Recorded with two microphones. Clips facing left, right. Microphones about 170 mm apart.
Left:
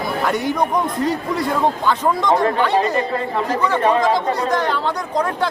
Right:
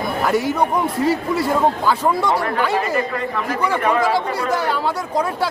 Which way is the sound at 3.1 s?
30° left (ahead or behind).